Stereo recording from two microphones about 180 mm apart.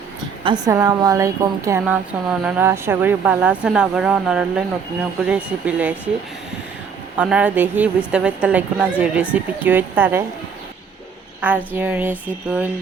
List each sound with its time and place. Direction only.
0.4 s speech: 20° right (ahead or behind)
7.2 s speech: 5° right (ahead or behind)
11.3 s speech: 10° right (ahead or behind)